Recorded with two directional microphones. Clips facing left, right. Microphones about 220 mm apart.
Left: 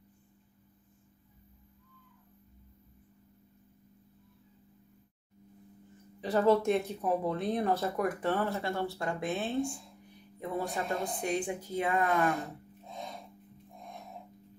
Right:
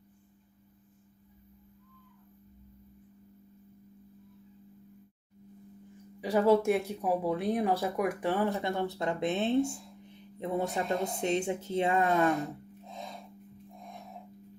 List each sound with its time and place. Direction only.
6.2 s speech: 10° right (ahead or behind); by 12.3 s 25° right (ahead or behind)